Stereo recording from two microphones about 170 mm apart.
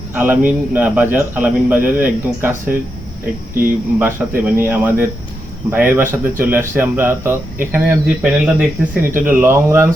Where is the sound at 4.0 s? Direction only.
15° right (ahead or behind).